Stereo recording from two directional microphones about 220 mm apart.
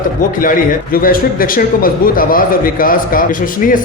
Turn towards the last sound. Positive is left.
turn(degrees=40)  # may be behind; listen again after turning